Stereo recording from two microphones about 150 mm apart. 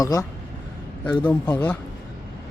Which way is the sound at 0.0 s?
25° left (ahead or behind).